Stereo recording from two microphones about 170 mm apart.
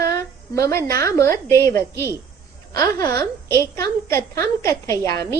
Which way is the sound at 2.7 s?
20° left (ahead or behind).